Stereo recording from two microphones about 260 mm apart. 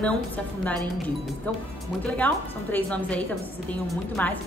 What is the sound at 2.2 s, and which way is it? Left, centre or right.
A woman's voice, centre.